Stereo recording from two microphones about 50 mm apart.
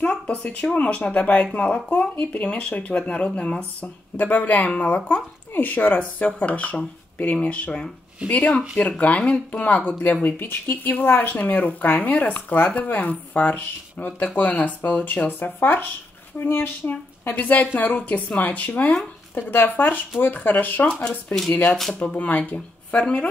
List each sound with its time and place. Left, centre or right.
0.0 s speech: left
8.3 s speech: left
10.2 s speech: left
17.4 s speech: left
19.3 s speech: left
21.9 s speech: left